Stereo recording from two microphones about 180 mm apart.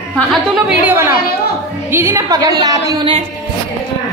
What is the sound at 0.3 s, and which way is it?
A woman's voice, 5° right (ahead or behind).